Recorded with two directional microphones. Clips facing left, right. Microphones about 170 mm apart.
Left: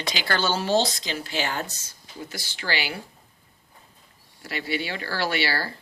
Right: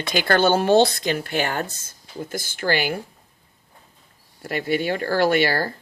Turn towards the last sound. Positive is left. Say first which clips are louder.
# right 7 dB
turn(degrees=-50)  # may be behind; listen again after turning